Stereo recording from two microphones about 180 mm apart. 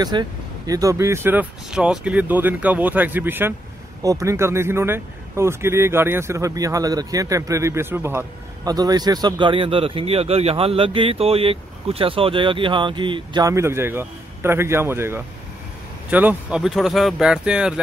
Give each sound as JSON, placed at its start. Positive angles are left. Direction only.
{"t": 0.0, "sound": "speech", "side_deg": -25}